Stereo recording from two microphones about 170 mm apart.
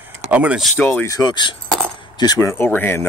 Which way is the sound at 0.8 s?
15° left (ahead or behind).